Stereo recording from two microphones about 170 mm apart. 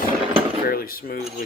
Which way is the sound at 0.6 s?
60° left (ahead or behind).